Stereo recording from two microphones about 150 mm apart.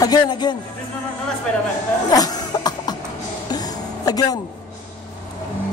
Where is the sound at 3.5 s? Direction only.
25° left (ahead or behind).